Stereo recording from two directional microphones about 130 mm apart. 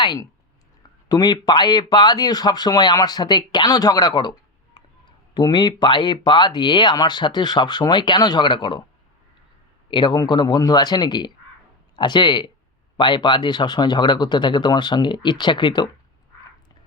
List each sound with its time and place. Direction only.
0.0 s speech: 35° left (ahead or behind)
9.9 s speech: 35° left (ahead or behind)